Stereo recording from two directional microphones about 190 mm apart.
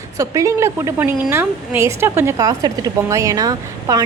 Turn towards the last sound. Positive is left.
turn(degrees=-20)  # may be behind; listen again after turning